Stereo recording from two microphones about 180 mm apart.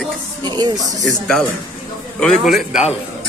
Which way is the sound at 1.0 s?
5° left (ahead or behind).